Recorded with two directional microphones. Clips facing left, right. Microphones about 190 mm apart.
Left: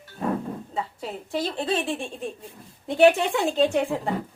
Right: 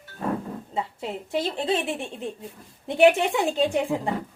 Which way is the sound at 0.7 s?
25° right (ahead or behind).